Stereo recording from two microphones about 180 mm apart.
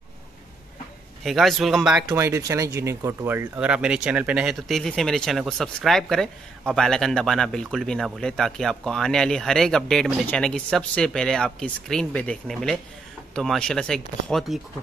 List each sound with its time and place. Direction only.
1.2 s speech: centre (ahead or behind)
2.0 s speech: 15° right (ahead or behind); by 14.6 s centre (ahead or behind)